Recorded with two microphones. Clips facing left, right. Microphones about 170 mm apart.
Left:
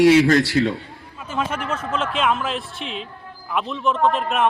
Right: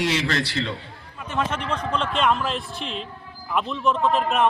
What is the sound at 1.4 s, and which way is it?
Speech, 10° left (ahead or behind).